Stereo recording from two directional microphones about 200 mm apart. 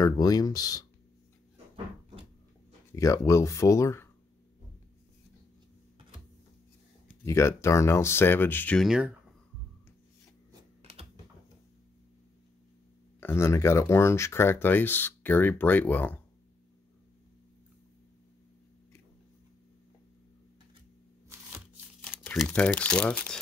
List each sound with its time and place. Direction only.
0.0 s speech: 20° left (ahead or behind)
2.9 s speech: 15° left (ahead or behind)
7.2 s speech: 15° left (ahead or behind); by 9.1 s 5° right (ahead or behind)
10.5 s typing: 25° right (ahead or behind)
13.2 s speech: 10° left (ahead or behind)
22.0 s crumpling: 5° left (ahead or behind)
22.4 s speech: 5° left (ahead or behind)